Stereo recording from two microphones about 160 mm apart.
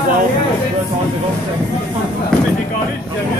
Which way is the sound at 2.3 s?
5° left (ahead or behind).